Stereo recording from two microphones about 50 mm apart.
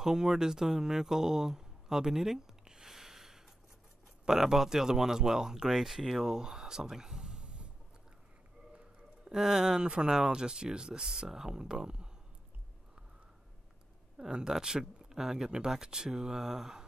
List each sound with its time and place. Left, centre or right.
0.0 s speech: centre
9.3 s speech: centre
14.3 s speech: centre